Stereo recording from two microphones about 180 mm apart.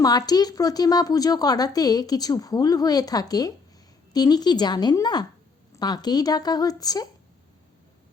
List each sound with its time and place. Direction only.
0.0 s speech: 20° left (ahead or behind)